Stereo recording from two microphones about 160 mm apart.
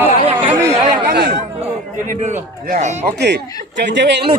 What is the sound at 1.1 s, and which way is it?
Speech, 85° right.